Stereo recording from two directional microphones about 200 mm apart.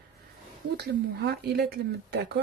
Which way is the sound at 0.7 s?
55° right (ahead or behind).